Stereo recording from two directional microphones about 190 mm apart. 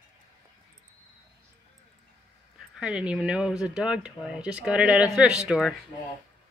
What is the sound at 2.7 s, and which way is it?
Speech, 5° right (ahead or behind).